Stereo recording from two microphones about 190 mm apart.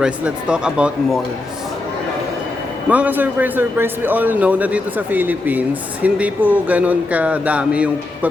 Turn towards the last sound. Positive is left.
turn(degrees=-5)  # may be behind; listen again after turning